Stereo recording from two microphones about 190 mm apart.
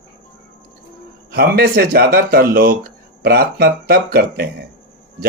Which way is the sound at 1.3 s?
55° right (ahead or behind).